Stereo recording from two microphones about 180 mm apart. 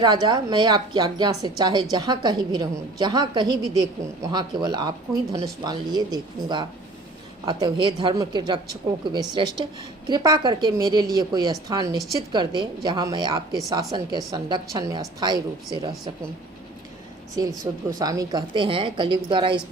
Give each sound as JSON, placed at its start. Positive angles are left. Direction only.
{"t": 0.0, "sound": "a woman's voice", "side_deg": -25}
{"t": 17.6, "sound": "a woman's voice", "side_deg": -20}